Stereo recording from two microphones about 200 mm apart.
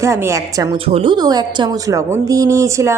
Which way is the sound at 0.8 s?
25° right (ahead or behind).